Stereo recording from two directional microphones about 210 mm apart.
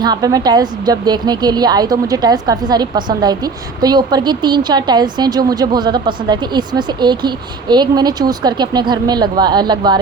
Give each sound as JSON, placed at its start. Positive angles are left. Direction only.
{"t": 0.0, "sound": "a woman's voice", "side_deg": -20}